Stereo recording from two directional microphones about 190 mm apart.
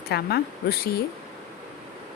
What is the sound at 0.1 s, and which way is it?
Speech, 60° left (ahead or behind).